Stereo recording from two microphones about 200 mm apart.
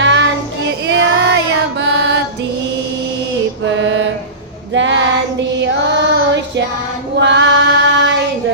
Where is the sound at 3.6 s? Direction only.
65° right (ahead or behind).